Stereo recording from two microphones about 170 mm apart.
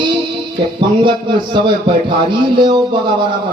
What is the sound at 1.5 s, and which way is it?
A man's voice, 30° right (ahead or behind).